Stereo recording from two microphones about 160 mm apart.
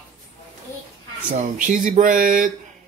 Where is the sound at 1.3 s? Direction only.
50° right (ahead or behind).